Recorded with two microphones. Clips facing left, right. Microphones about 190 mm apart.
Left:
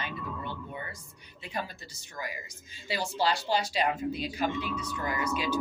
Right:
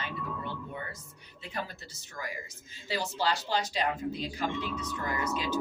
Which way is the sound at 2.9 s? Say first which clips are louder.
Left 2 dB; 15° left (ahead or behind).